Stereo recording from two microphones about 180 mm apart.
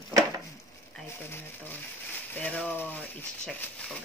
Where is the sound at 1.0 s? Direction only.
10° left (ahead or behind).